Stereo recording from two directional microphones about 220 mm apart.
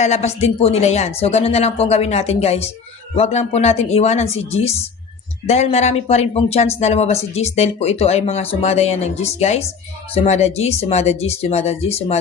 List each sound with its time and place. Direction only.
0.0 s speech: 30° left (ahead or behind)